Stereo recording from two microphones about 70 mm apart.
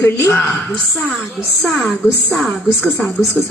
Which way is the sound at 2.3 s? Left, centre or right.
Centre.